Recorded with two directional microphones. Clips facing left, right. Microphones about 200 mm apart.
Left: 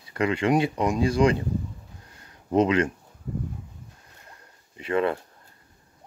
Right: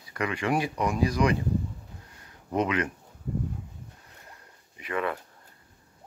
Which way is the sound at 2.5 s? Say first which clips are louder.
Left 6 dB; 30° left (ahead or behind).